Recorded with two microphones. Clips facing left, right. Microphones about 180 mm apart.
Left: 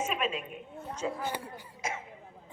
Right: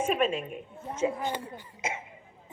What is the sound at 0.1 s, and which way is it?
Speech, 50° right (ahead or behind).